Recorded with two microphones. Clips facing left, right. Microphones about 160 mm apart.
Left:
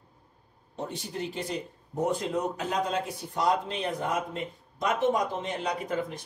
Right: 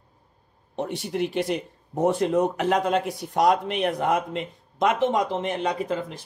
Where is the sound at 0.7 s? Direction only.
75° right (ahead or behind).